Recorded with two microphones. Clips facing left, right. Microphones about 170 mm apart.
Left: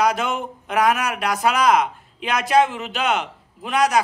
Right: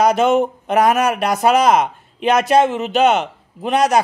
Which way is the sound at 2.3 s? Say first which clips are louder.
Right 4 dB; 25° right (ahead or behind).